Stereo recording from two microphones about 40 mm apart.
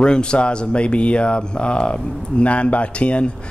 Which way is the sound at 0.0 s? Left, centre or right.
Left.